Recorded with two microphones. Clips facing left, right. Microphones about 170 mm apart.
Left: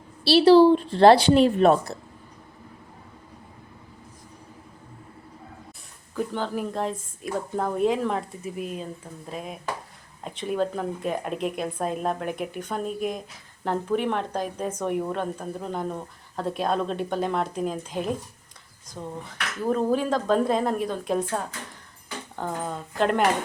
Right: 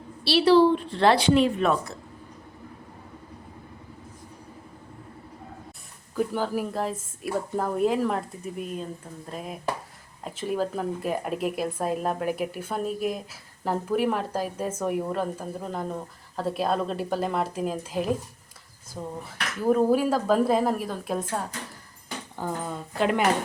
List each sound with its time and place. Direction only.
0.3 s a woman's voice: 35° left (ahead or behind)
6.1 s speech: 5° right (ahead or behind)